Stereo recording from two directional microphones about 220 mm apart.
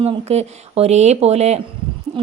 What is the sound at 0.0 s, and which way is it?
A woman's voice, 30° right (ahead or behind).